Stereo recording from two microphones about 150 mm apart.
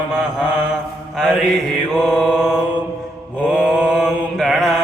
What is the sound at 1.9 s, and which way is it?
Mantra, centre (ahead or behind).